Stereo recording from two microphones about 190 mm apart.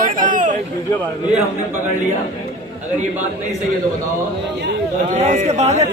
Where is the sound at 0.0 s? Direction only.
45° right (ahead or behind).